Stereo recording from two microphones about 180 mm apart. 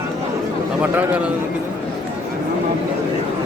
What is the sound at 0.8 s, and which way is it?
Speech, 10° right (ahead or behind).